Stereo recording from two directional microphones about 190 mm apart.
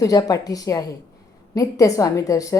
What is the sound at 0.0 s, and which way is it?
A woman's voice, 20° left (ahead or behind).